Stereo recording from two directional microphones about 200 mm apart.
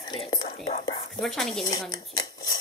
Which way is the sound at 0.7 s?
30° left (ahead or behind).